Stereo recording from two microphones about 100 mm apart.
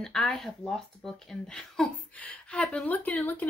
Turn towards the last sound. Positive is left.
turn(degrees=15)  # may be behind; listen again after turning